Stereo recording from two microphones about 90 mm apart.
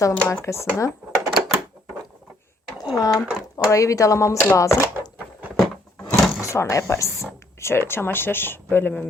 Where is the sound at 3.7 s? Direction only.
35° left (ahead or behind).